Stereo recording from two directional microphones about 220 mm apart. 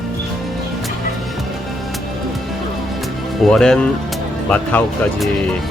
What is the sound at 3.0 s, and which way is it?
Speech, centre (ahead or behind).